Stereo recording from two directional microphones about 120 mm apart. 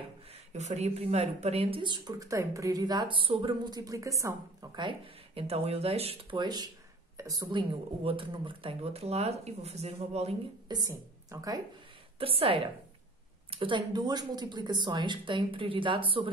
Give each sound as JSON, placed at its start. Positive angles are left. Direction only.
{"t": 0.5, "sound": "speech", "side_deg": -70}
{"t": 3.8, "sound": "a woman's voice", "side_deg": -25}
{"t": 4.7, "sound": "speech", "side_deg": -40}
{"t": 5.5, "sound": "speech", "side_deg": -60}
{"t": 6.3, "sound": "a woman's voice", "side_deg": -35}
{"t": 7.5, "sound": "speech", "side_deg": -50}
{"t": 10.7, "sound": "a woman's voice", "side_deg": -30}
{"t": 12.2, "sound": "speech", "side_deg": -50}